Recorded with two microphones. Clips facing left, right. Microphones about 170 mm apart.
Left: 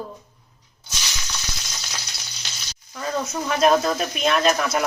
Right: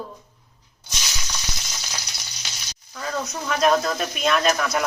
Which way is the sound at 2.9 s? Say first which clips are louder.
Left 2 dB; 5° left (ahead or behind).